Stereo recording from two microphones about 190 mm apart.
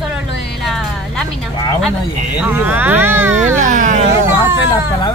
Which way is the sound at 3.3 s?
40° right (ahead or behind).